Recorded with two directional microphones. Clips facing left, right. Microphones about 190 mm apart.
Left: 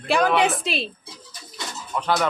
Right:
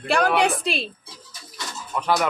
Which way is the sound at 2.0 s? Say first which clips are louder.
Even; 10° right (ahead or behind).